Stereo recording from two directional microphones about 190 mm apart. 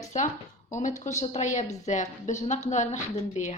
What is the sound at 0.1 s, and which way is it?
A woman's voice, 40° left (ahead or behind).